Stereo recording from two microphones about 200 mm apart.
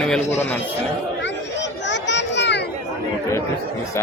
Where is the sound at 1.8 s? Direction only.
60° left (ahead or behind).